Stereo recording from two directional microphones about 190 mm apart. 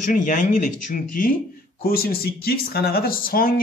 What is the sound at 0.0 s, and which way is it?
Speech, 45° left (ahead or behind).